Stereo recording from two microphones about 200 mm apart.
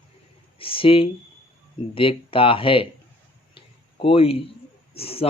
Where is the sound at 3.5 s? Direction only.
25° left (ahead or behind).